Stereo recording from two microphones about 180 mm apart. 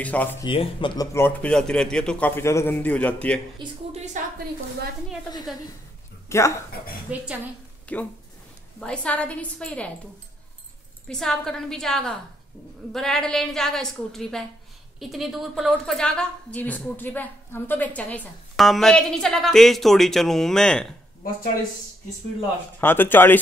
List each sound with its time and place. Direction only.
0.0 s a man's voice: 10° left (ahead or behind)
0.5 s speech: 30° left (ahead or behind)
1.1 s a man's voice: 10° left (ahead or behind)
3.5 s speech: 40° right (ahead or behind)
6.2 s a sound: 15° left (ahead or behind)
7.1 s a woman's voice: 5° right (ahead or behind)
7.9 s a man's voice: 5° left (ahead or behind)
11.1 s a woman's voice: centre (ahead or behind)
22.8 s a man's voice: 10° left (ahead or behind)